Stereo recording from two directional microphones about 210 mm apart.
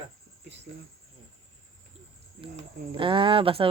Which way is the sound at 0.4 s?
55° right (ahead or behind).